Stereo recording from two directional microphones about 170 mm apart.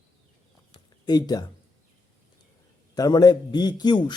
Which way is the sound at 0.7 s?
25° left (ahead or behind).